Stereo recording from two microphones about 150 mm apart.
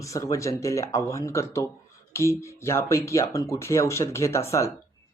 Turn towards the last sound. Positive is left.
turn(degrees=20)  # may be behind; listen again after turning